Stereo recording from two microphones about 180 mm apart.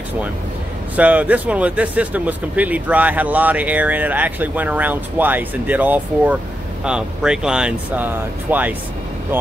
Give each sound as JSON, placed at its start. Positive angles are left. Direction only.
{"t": 0.9, "sound": "speech", "side_deg": -10}